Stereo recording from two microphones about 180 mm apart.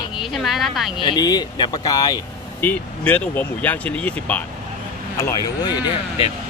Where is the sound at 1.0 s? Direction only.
20° left (ahead or behind).